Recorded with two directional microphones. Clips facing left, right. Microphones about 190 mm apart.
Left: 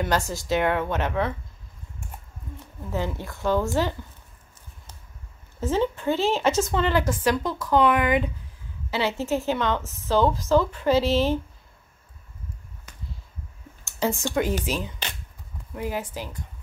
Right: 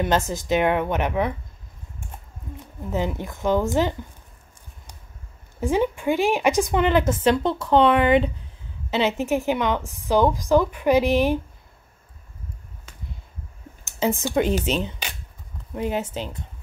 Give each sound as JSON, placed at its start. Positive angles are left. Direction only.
{"t": 0.0, "sound": "a woman's voice", "side_deg": -20}
{"t": 2.8, "sound": "a woman's voice", "side_deg": -15}
{"t": 5.6, "sound": "a woman's voice", "side_deg": -15}
{"t": 13.8, "sound": "a sound", "side_deg": -20}
{"t": 14.6, "sound": "a woman's voice", "side_deg": -25}